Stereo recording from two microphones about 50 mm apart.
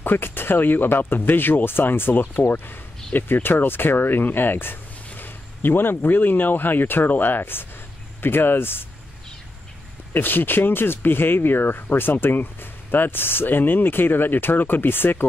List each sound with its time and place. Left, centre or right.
0.0 s speech: left
10.1 s speech: left